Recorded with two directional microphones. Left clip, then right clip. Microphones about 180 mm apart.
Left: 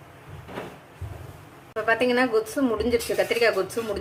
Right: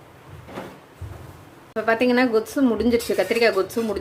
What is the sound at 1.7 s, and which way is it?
A woman's voice, 20° right (ahead or behind).